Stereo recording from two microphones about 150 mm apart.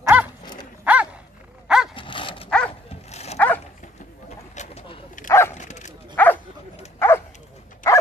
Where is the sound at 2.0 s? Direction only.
35° left (ahead or behind).